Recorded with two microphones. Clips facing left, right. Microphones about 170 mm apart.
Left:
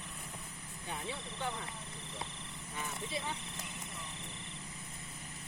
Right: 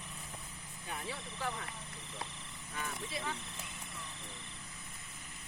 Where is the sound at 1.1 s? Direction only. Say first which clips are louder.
Even; 25° left (ahead or behind).